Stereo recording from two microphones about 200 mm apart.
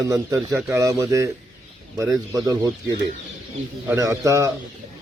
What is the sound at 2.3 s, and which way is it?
A man's voice, 15° right (ahead or behind).